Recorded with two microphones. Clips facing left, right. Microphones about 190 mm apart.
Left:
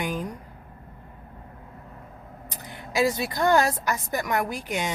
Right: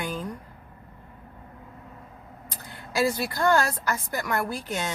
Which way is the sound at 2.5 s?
20° left (ahead or behind).